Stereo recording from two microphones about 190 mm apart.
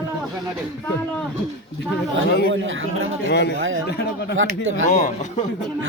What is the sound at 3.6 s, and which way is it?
Speech, 90° right.